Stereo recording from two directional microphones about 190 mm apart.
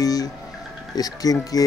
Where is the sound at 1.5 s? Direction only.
20° left (ahead or behind).